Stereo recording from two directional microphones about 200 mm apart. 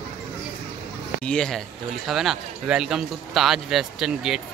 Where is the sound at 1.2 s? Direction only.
5° left (ahead or behind).